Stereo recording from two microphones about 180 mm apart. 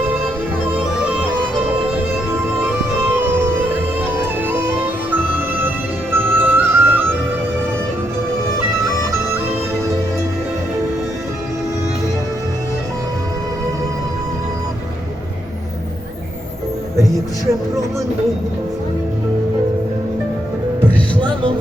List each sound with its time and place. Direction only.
3.1 s music: 10° right (ahead or behind)
21.2 s music: 25° right (ahead or behind)